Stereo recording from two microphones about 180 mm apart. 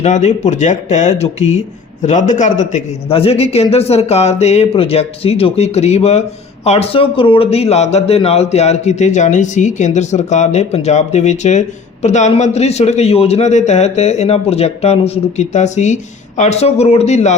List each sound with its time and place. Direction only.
0.0 s speech: 40° left (ahead or behind)